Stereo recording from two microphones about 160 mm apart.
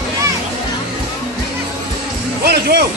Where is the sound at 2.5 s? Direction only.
80° right.